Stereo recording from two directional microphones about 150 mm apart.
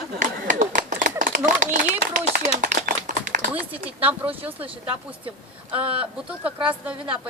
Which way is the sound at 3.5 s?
10° right (ahead or behind).